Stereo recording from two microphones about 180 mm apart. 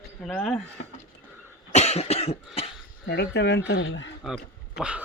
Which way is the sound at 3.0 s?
65° left (ahead or behind).